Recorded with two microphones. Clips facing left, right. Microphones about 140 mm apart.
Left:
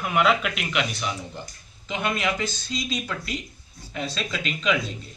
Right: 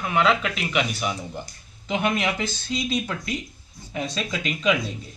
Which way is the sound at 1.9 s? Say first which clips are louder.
Right 2 dB; 20° right (ahead or behind).